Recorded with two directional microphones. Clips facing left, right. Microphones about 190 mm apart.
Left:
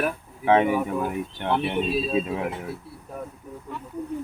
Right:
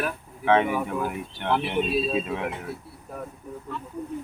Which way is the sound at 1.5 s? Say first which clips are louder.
Even; centre (ahead or behind).